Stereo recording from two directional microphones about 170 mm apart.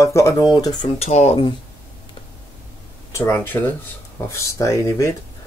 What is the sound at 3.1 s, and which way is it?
Speech, 15° left (ahead or behind).